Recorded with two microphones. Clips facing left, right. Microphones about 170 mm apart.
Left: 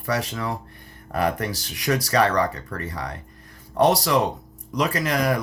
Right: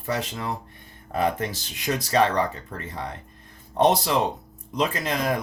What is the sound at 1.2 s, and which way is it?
Speech, 20° right (ahead or behind).